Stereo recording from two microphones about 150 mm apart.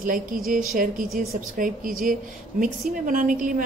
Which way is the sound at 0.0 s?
65° right (ahead or behind).